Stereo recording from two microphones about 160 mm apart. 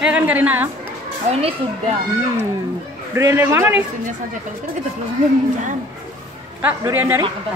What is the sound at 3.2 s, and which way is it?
Speech, 20° right (ahead or behind).